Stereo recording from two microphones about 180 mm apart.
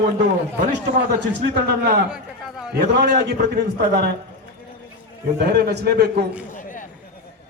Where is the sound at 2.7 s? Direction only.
60° right (ahead or behind).